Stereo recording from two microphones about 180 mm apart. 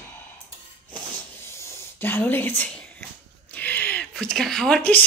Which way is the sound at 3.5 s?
10° left (ahead or behind).